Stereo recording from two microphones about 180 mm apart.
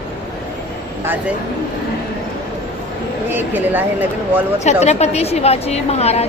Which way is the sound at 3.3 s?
10° right (ahead or behind).